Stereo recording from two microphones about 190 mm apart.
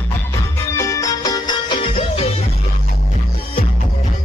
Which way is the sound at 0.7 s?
15° left (ahead or behind).